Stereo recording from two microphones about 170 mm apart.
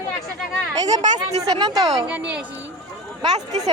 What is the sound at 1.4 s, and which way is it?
Speech, 20° right (ahead or behind).